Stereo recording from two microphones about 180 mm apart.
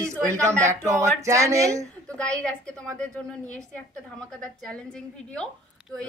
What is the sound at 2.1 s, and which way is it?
A woman's voice, 5° left (ahead or behind).